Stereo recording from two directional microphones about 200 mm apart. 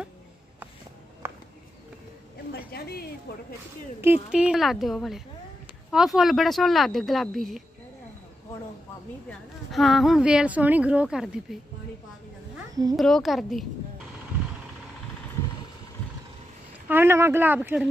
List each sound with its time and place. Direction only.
1.2 s a sound: 10° right (ahead or behind)
2.7 s a sound: 50° left (ahead or behind)
4.0 s speech: 5° right (ahead or behind)
9.3 s speech: centre (ahead or behind)
12.9 s speech: centre (ahead or behind)
16.8 s speech: 10° right (ahead or behind)